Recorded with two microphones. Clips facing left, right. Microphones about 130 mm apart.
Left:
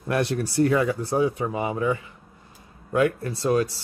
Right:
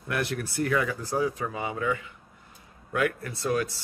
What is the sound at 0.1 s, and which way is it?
Speech, 30° left (ahead or behind).